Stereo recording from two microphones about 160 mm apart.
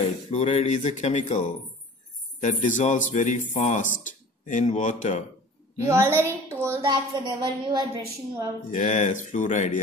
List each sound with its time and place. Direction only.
0.3 s speech: 45° left (ahead or behind)
2.4 s speech: 50° left (ahead or behind)
5.9 s a woman's voice: 15° right (ahead or behind)
6.5 s a sound: 15° right (ahead or behind)
6.8 s a woman's voice: 30° right (ahead or behind)
8.7 s speech: 50° left (ahead or behind)